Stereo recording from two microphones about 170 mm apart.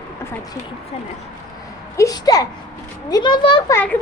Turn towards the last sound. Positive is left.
turn(degrees=15)  # may be behind; listen again after turning